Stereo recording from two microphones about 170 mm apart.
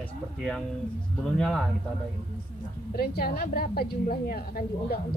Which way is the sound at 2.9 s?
65° left (ahead or behind).